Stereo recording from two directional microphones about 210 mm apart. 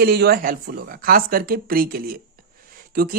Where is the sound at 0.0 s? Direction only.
50° right (ahead or behind).